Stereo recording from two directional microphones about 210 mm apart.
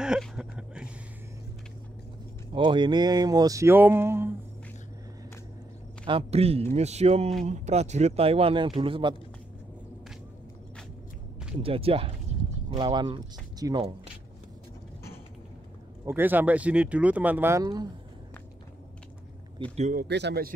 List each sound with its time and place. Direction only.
0.0 s a sound: 5° right (ahead or behind)
2.5 s speech: 25° right (ahead or behind)
6.0 s speech: 25° right (ahead or behind)
11.6 s speech: 25° right (ahead or behind)
16.1 s speech: 10° right (ahead or behind)
19.7 s speech: 35° right (ahead or behind)
20.0 s speech: 55° right (ahead or behind)